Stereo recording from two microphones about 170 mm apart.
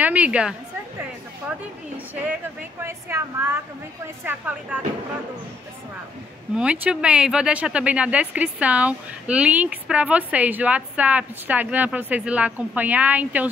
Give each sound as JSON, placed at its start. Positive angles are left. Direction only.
{"t": 0.0, "sound": "speech", "side_deg": -10}
{"t": 2.8, "sound": "speech", "side_deg": -15}
{"t": 6.5, "sound": "speech", "side_deg": -5}